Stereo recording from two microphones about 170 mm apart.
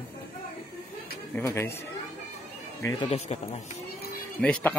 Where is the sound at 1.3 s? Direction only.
15° left (ahead or behind).